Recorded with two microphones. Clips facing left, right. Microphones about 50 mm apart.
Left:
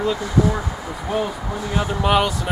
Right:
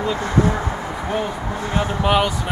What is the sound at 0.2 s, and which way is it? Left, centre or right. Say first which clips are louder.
Speech: right 1 dB; right.